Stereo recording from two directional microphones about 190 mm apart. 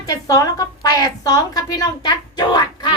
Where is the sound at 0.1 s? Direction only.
20° left (ahead or behind).